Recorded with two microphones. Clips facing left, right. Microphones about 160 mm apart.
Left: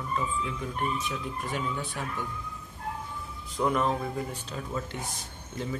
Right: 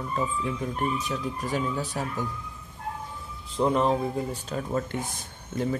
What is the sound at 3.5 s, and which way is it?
Speech, 25° right (ahead or behind).